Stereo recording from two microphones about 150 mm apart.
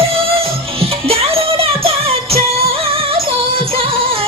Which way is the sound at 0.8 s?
40° right (ahead or behind).